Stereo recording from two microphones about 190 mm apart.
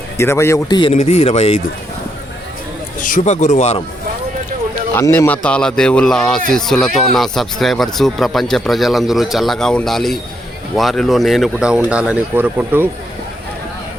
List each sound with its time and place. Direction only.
0.2 s speech: 15° left (ahead or behind); by 1.6 s 35° left (ahead or behind)
3.2 s speech: 40° left (ahead or behind)
4.9 s speech: 10° left (ahead or behind); by 12.9 s 10° right (ahead or behind)